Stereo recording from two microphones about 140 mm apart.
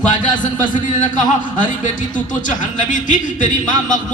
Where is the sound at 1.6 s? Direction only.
65° left (ahead or behind).